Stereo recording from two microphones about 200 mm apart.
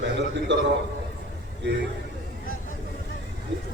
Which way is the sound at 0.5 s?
65° right (ahead or behind).